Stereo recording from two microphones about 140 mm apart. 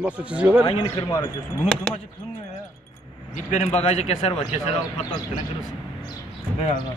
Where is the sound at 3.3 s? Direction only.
55° left (ahead or behind).